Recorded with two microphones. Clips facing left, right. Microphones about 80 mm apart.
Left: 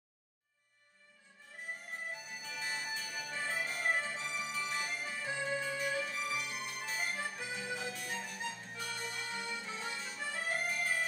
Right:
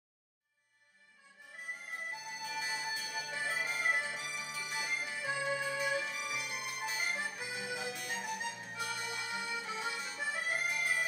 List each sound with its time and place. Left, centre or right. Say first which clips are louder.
2.3 s music: right 3 dB; centre